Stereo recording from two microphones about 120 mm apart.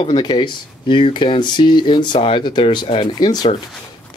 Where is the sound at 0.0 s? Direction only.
40° left (ahead or behind).